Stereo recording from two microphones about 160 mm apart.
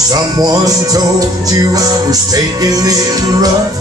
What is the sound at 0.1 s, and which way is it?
Music, 25° right (ahead or behind).